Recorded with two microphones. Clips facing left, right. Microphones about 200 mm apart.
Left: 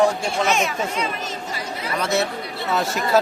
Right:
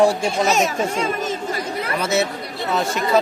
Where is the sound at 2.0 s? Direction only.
Centre (ahead or behind).